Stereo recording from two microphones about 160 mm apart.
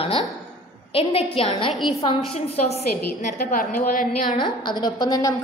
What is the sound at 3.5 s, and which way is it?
Speech, 60° left (ahead or behind).